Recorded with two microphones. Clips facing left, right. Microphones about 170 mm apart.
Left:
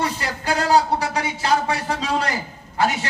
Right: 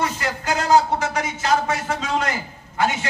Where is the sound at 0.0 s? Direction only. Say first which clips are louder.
Even; 30° left (ahead or behind).